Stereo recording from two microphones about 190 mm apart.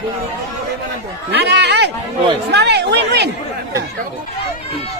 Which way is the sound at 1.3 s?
65° right (ahead or behind).